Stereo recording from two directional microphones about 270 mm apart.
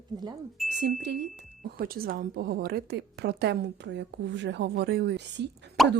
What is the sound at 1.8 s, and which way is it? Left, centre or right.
A woman's voice, right.